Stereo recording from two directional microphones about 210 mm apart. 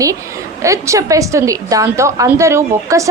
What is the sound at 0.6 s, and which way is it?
A woman's voice, 15° right (ahead or behind).